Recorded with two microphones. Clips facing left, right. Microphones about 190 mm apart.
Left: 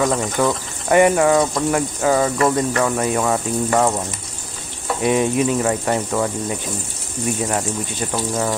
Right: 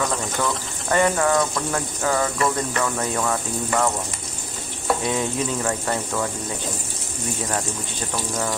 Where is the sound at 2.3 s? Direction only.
35° left (ahead or behind).